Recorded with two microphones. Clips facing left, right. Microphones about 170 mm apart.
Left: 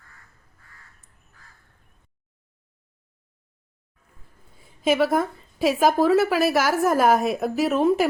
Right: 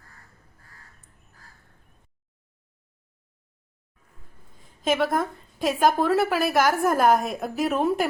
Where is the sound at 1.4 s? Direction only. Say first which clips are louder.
Right 1 dB; 35° right (ahead or behind).